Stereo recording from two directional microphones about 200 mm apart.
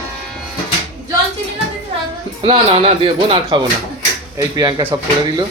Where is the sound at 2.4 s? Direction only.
30° right (ahead or behind).